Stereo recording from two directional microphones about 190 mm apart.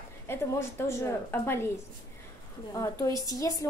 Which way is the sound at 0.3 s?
15° left (ahead or behind).